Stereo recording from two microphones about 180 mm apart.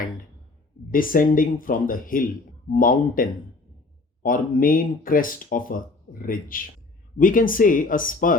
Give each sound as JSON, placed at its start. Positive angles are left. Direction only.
{"t": 0.9, "sound": "speech", "side_deg": 50}